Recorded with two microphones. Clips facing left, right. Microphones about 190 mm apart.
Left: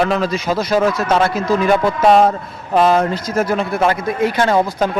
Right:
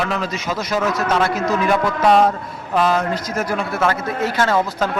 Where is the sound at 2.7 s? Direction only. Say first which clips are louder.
Left 4 dB; 25° left (ahead or behind).